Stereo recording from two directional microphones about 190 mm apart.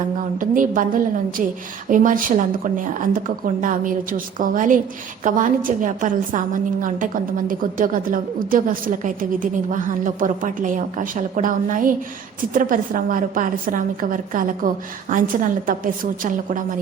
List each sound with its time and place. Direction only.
0.3 s a woman's voice: 45° right (ahead or behind)